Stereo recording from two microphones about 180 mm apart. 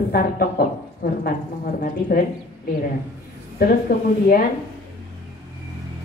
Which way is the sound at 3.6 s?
55° left (ahead or behind).